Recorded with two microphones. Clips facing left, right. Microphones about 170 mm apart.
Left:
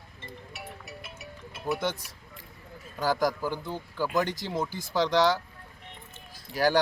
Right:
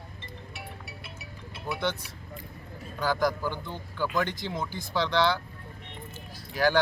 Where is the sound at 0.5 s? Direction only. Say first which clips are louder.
Left 1 dB; 45° left (ahead or behind).